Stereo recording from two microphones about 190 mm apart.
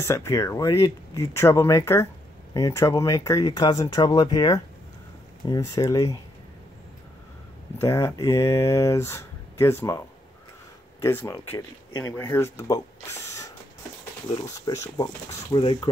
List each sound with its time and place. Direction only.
0.0 s speech: 15° left (ahead or behind)
7.8 s speech: 15° left (ahead or behind)